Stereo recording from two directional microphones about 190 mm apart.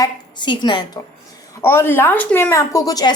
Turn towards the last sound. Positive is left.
turn(degrees=20)  # may be behind; listen again after turning